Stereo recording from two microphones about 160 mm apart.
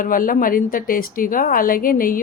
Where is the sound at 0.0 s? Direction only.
60° left (ahead or behind).